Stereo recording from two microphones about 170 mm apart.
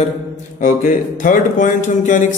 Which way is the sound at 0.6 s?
45° left (ahead or behind).